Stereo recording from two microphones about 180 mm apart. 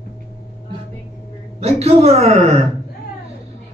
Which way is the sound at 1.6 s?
35° right (ahead or behind).